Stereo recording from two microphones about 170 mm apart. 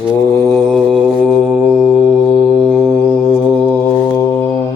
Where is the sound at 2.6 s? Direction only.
25° right (ahead or behind).